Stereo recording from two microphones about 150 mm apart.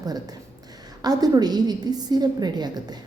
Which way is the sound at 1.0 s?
25° right (ahead or behind).